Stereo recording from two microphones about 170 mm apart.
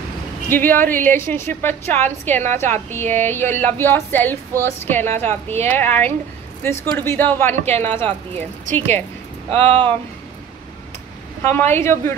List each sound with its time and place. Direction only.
0.5 s a woman's voice: 10° left (ahead or behind)
9.5 s speech: 35° right (ahead or behind)
11.5 s a woman's voice: 10° left (ahead or behind)